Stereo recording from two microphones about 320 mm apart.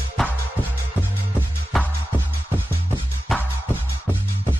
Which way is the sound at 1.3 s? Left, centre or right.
Centre.